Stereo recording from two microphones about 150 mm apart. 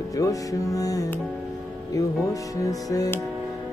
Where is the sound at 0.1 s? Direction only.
20° left (ahead or behind).